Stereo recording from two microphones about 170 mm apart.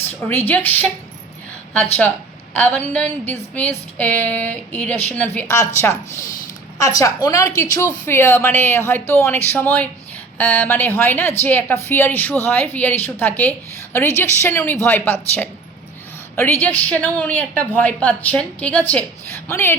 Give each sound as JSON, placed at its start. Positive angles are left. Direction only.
{"t": 0.3, "sound": "speech", "side_deg": 10}
{"t": 2.6, "sound": "a woman's voice", "side_deg": 10}